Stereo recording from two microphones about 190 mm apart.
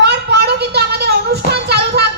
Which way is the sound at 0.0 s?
60° right (ahead or behind).